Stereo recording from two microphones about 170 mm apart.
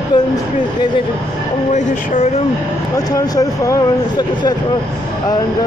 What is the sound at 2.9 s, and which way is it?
Speech, 20° left (ahead or behind).